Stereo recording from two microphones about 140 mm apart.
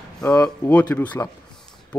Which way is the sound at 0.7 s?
10° left (ahead or behind).